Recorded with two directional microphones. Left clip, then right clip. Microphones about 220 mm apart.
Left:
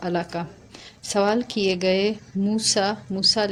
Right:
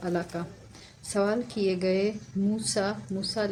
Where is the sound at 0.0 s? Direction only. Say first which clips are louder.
Left 5 dB; 25° left (ahead or behind).